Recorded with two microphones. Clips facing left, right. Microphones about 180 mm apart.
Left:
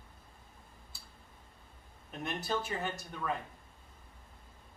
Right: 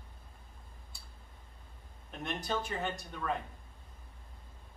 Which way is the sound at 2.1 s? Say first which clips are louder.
Left 1 dB; 5° left (ahead or behind).